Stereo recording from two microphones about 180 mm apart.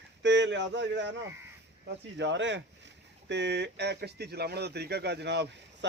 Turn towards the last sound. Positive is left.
turn(degrees=-70)  # may be behind; listen again after turning